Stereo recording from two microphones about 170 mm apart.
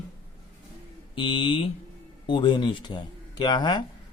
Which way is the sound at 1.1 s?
30° left (ahead or behind).